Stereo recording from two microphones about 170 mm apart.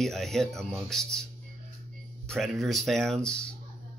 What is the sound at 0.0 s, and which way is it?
Speech, centre (ahead or behind).